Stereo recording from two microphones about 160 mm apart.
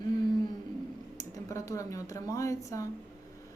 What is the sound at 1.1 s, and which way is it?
Speech, 20° left (ahead or behind).